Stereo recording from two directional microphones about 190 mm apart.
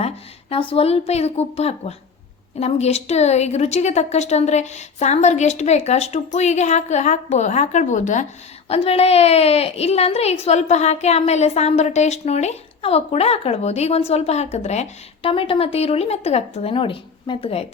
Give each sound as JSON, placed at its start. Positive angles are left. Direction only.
{"t": 0.5, "sound": "a woman's voice", "side_deg": 30}